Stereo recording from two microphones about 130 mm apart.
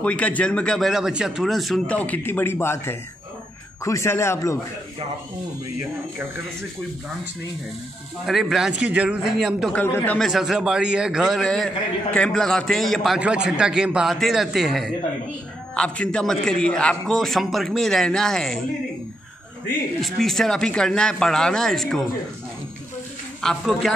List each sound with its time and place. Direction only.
0.0 s a man's voice: 10° left (ahead or behind)
8.3 s a man's voice: 5° right (ahead or behind)
9.7 s speech: 15° left (ahead or behind)
10.1 s a man's voice: centre (ahead or behind)
20.0 s a man's voice: 5° left (ahead or behind)
23.4 s a man's voice: centre (ahead or behind)